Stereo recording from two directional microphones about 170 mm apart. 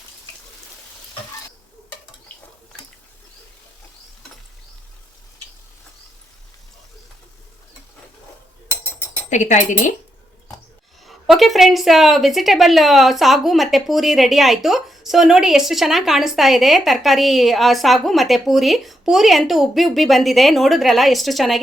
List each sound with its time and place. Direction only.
8.7 s a sound: 10° left (ahead or behind)
9.3 s speech: 45° left (ahead or behind)
11.0 s a woman's voice: centre (ahead or behind)